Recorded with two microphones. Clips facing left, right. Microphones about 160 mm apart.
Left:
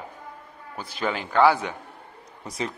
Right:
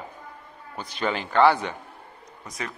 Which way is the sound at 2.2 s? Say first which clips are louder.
Left 5 dB; 30° left (ahead or behind).